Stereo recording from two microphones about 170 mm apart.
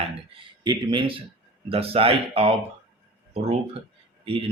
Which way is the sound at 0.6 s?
25° right (ahead or behind).